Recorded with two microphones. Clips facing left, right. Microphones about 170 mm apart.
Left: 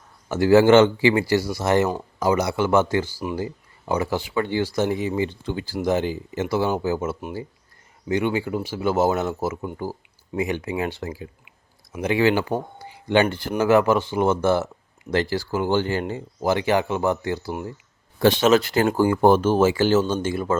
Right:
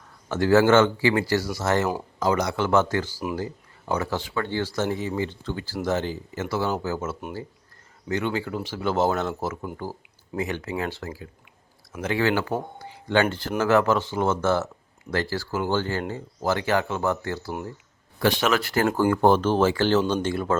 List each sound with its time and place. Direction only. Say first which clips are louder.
0.3 s speech: left 4 dB; 10° left (ahead or behind)
12.8 s a sound: left 3 dB; 15° left (ahead or behind)
13.6 s a man's voice: left 3 dB; 10° left (ahead or behind)